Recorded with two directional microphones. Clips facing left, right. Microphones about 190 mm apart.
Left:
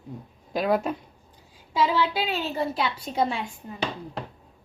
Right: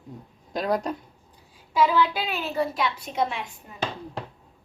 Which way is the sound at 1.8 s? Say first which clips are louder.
Right 2 dB; 30° left (ahead or behind).